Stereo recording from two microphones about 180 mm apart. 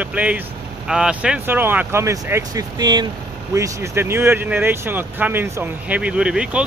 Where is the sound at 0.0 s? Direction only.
5° right (ahead or behind).